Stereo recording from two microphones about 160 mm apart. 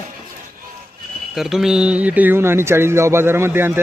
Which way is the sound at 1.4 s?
Centre (ahead or behind).